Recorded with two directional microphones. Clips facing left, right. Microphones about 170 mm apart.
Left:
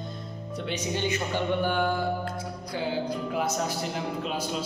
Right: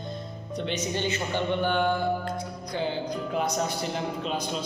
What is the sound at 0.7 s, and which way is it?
Speech, 10° left (ahead or behind).